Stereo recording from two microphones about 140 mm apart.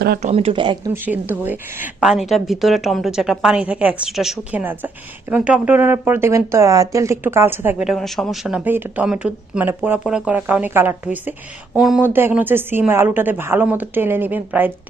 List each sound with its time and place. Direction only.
0.2 s speech: 50° right (ahead or behind)
0.9 s speech: 15° right (ahead or behind)
4.6 s speech: 15° right (ahead or behind)
7.9 s speech: centre (ahead or behind)
12.0 s speech: 15° right (ahead or behind)